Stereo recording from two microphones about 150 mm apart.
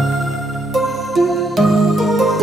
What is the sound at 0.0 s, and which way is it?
Music, centre (ahead or behind).